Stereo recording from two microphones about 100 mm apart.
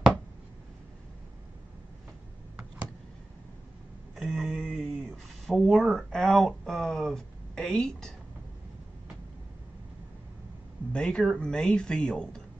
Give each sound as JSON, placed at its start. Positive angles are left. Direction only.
{"t": 4.1, "sound": "a sound", "side_deg": 0}
{"t": 6.1, "sound": "speech", "side_deg": 5}
{"t": 10.9, "sound": "speech", "side_deg": 10}